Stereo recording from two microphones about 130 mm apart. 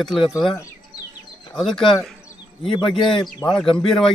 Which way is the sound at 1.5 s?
5° left (ahead or behind).